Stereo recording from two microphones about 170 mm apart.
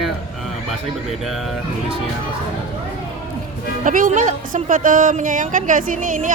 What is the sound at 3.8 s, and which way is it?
A woman's voice, 50° right (ahead or behind).